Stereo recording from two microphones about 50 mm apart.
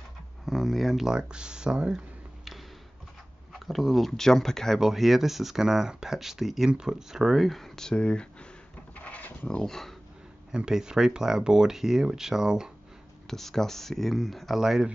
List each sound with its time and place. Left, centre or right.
0.5 s speech: centre
3.5 s speech: centre
4.7 s speech: centre; by 8.5 s left
8.9 s a sound: left
9.5 s speech: centre
10.5 s speech: centre
13.3 s speech: centre